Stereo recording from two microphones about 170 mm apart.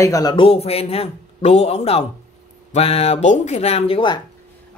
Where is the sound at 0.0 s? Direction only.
20° left (ahead or behind).